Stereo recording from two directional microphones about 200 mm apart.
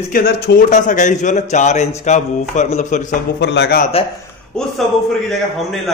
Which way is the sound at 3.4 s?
55° left (ahead or behind).